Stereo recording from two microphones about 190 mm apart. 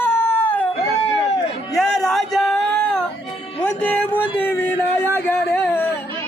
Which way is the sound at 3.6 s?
5° left (ahead or behind).